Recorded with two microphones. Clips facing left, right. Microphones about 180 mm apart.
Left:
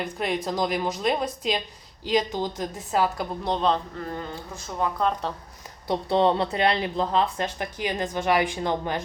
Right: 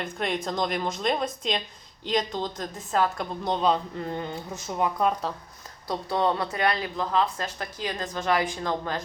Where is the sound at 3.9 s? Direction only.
20° right (ahead or behind).